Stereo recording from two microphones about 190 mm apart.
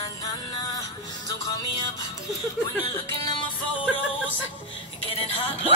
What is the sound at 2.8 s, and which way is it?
Speech, 20° left (ahead or behind).